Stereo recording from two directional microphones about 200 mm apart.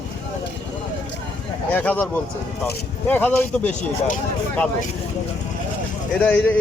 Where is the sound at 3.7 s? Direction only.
40° left (ahead or behind).